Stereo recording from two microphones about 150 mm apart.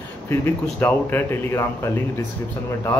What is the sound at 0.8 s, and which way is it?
Speech, 15° left (ahead or behind).